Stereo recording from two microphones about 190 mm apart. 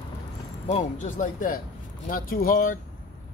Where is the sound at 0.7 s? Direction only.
40° left (ahead or behind).